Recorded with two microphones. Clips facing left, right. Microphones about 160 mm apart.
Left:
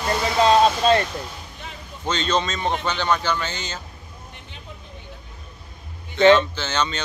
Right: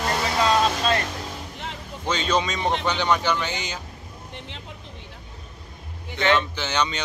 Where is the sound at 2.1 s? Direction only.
10° right (ahead or behind).